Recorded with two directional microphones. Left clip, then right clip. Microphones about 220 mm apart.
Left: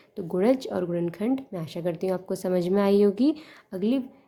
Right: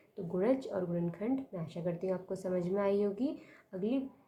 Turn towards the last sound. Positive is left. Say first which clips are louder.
# left 9 dB
turn(degrees=50)  # may be behind; listen again after turning